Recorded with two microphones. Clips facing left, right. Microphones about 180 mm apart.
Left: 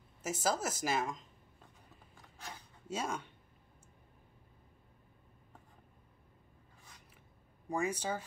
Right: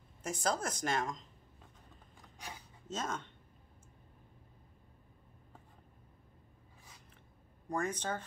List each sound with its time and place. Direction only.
0.2 s a woman's voice: 5° left (ahead or behind)
2.3 s a sound: 15° right (ahead or behind)
2.9 s speech: 10° left (ahead or behind)
7.6 s speech: 10° left (ahead or behind)